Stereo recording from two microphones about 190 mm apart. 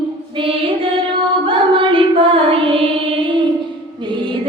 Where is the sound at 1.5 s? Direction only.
25° right (ahead or behind).